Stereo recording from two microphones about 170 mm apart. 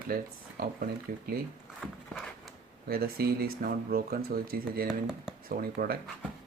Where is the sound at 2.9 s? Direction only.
65° right (ahead or behind).